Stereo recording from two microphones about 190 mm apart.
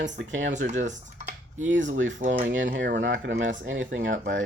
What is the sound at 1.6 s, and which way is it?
Speech, 75° right (ahead or behind).